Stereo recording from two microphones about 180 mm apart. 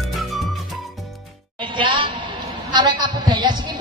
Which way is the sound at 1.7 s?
30° right (ahead or behind).